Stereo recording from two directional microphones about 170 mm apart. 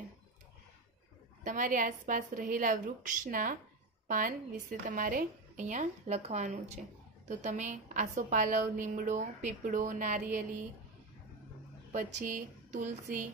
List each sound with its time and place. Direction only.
1.4 s a woman's voice: 50° right (ahead or behind)
11.9 s a woman's voice: 50° right (ahead or behind)